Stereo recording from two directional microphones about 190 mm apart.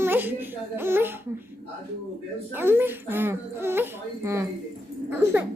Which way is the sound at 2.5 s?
10° right (ahead or behind).